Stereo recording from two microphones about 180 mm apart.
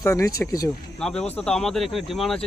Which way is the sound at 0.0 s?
15° left (ahead or behind).